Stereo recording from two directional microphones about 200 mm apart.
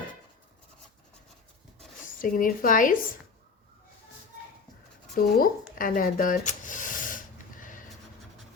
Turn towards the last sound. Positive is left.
turn(degrees=40)  # may be behind; listen again after turning